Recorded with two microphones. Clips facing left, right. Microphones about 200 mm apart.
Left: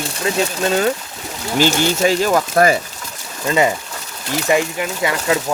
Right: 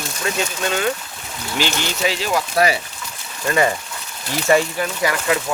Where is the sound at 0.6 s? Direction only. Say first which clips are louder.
Left 4 dB; 35° left (ahead or behind).